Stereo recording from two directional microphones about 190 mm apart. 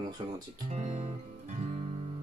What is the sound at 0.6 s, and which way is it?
Music, 35° right (ahead or behind).